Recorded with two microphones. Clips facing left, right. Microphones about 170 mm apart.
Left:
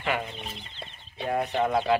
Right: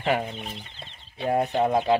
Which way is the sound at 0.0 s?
35° right (ahead or behind).